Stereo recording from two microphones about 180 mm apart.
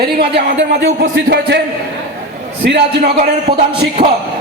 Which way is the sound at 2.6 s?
70° right (ahead or behind).